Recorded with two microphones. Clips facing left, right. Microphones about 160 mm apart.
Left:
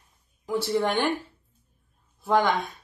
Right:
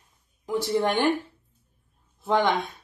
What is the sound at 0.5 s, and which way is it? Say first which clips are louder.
Speech: even; 15° right (ahead or behind).